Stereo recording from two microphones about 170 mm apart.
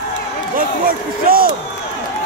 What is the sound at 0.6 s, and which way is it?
Speech, 55° right (ahead or behind).